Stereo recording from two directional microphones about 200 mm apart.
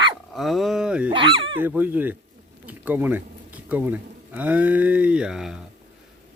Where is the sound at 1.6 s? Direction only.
10° right (ahead or behind).